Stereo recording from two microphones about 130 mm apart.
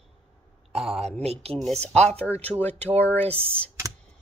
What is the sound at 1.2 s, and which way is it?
Speech, 50° right (ahead or behind).